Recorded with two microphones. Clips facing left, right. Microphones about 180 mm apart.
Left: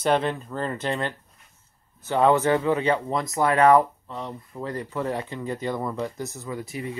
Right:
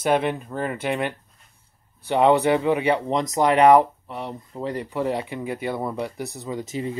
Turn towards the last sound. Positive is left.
turn(degrees=-25)  # may be behind; listen again after turning